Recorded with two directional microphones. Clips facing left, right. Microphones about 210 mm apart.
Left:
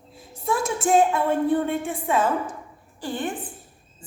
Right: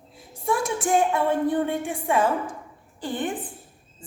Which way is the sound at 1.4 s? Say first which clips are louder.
Left 1 dB; 15° right (ahead or behind).